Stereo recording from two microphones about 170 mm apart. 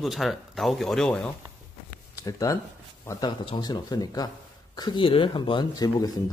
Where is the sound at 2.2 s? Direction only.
20° left (ahead or behind).